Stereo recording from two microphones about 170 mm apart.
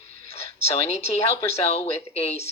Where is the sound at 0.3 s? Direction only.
35° left (ahead or behind).